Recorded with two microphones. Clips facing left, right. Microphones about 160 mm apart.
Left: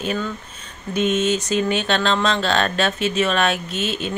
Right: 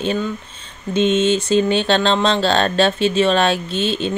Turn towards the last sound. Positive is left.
turn(degrees=-30)  # may be behind; listen again after turning